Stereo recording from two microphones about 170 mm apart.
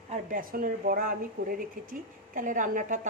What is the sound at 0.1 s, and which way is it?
Speech, 55° right (ahead or behind).